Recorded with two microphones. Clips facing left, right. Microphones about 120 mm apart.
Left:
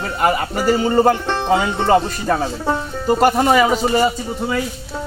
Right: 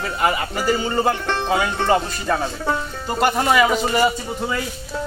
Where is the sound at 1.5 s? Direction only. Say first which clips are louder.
Left 4 dB; 20° left (ahead or behind).